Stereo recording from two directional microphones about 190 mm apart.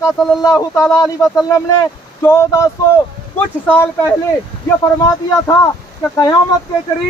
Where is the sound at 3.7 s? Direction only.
10° left (ahead or behind).